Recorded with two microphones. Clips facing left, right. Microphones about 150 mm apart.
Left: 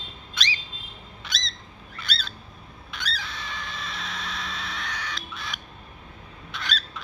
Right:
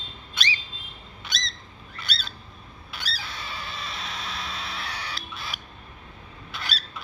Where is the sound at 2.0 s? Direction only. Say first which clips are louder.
Left 2 dB; centre (ahead or behind).